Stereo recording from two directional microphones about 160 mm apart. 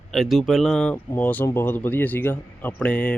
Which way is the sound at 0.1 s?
Centre (ahead or behind).